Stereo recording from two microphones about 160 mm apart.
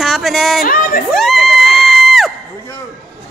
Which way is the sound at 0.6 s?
65° left (ahead or behind).